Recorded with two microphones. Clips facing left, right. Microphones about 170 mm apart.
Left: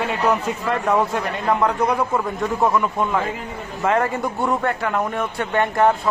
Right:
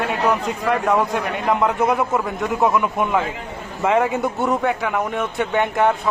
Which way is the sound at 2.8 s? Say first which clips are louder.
Right 1 dB; 15° right (ahead or behind).